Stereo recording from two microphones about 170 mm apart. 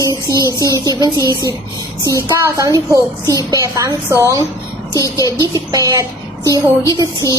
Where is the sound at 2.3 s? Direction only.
20° right (ahead or behind).